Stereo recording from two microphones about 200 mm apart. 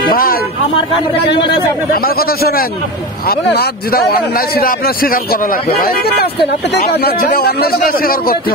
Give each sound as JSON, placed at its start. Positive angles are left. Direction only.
{"t": 0.1, "sound": "vehicle", "side_deg": 45}
{"t": 2.0, "sound": "a man's voice", "side_deg": 50}